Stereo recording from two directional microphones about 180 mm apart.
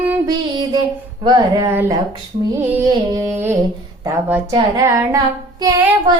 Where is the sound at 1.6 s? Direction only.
15° right (ahead or behind).